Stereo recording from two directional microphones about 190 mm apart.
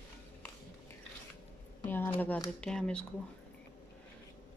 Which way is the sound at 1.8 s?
10° left (ahead or behind).